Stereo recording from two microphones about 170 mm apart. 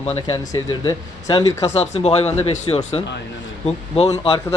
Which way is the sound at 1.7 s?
40° left (ahead or behind).